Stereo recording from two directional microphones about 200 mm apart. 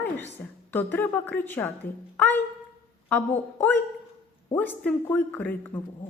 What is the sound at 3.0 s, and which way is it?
A woman's voice, 10° left (ahead or behind).